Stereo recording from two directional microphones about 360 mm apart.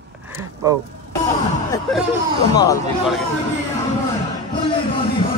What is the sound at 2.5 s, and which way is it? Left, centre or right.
Speech, centre.